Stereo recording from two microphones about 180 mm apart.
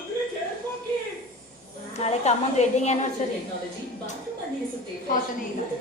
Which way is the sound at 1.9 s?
40° left (ahead or behind).